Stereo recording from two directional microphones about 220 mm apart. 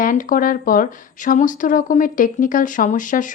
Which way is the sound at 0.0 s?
40° left (ahead or behind).